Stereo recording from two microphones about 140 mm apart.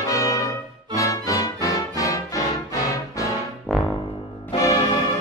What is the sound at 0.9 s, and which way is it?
Music, 25° left (ahead or behind).